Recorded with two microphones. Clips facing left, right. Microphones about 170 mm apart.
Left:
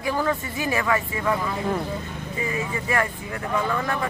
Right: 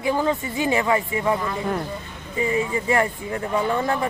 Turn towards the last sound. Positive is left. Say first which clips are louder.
# right 3 dB
turn(degrees=-25)  # may be behind; listen again after turning